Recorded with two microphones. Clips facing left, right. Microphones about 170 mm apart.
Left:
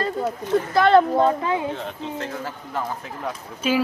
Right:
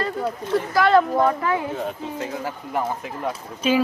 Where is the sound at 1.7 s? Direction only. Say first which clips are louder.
Right 2 dB; 5° right (ahead or behind).